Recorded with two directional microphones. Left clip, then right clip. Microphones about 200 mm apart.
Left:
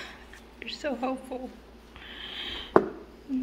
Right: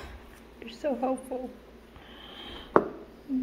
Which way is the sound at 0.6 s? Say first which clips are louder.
Right 1 dB; 20° right (ahead or behind).